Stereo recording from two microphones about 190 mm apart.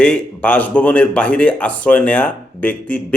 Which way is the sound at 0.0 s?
5° left (ahead or behind).